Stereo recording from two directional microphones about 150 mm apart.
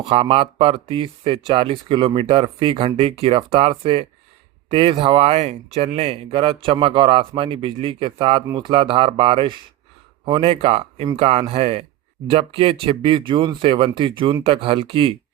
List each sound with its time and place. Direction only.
0.0 s speech: 35° right (ahead or behind)